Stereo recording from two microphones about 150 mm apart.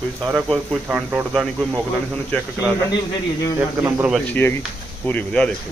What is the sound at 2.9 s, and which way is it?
Speech, 25° left (ahead or behind).